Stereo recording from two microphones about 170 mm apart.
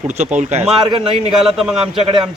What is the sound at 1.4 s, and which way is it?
Speech, centre (ahead or behind).